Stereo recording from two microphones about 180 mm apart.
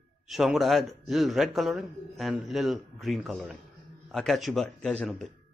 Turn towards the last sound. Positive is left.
turn(degrees=5)  # may be behind; listen again after turning